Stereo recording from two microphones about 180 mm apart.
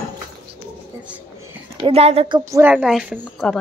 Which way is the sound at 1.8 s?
35° right (ahead or behind).